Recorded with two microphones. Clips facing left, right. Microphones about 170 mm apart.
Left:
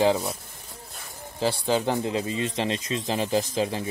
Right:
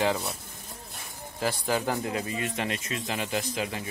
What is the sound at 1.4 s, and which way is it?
Speech, 25° left (ahead or behind).